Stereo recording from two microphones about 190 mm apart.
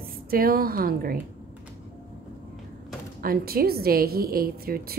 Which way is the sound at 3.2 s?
50° right (ahead or behind).